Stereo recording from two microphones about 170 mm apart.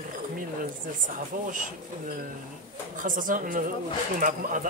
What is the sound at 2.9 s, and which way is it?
Speech, 50° right (ahead or behind).